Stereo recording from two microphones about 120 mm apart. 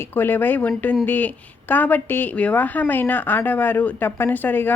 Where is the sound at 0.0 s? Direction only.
15° left (ahead or behind).